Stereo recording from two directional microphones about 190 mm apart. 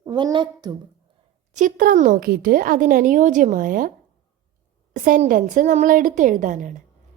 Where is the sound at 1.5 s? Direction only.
45° right (ahead or behind).